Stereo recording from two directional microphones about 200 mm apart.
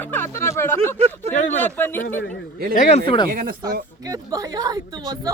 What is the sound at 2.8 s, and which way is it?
Speech, 30° left (ahead or behind).